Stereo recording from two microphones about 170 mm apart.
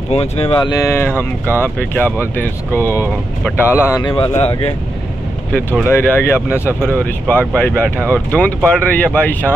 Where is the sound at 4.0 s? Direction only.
30° left (ahead or behind).